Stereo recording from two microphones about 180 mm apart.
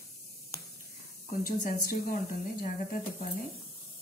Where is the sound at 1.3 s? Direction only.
45° left (ahead or behind).